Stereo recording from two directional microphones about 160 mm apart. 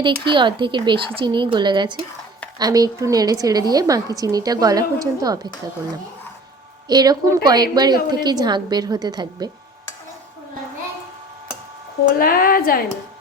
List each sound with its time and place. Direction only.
0.0 s a woman's voice: 30° right (ahead or behind)
6.8 s a woman's voice: 25° right (ahead or behind)
12.1 s a woman's voice: 65° left (ahead or behind)